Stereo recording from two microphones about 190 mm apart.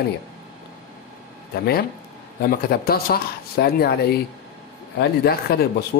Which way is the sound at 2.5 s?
55° left (ahead or behind).